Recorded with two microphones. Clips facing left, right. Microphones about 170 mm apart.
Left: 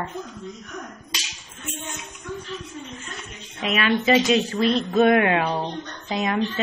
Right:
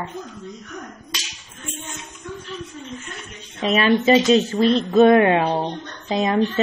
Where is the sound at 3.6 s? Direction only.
35° right (ahead or behind).